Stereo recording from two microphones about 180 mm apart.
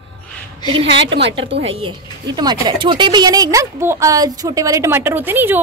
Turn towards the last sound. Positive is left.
turn(degrees=-10)  # may be behind; listen again after turning